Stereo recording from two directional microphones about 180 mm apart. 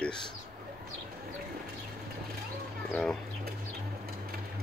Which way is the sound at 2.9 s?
5° left (ahead or behind).